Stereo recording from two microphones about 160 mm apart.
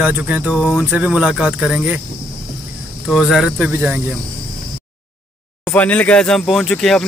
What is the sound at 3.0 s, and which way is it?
Speech, centre (ahead or behind).